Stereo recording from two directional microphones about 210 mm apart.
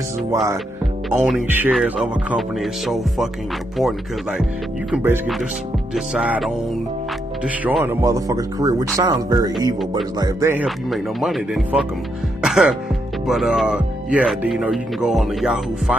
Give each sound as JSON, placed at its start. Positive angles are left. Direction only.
{"t": 1.1, "sound": "speech", "side_deg": -5}